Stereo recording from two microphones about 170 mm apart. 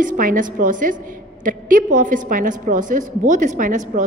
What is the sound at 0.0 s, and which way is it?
A woman's voice, 50° right (ahead or behind).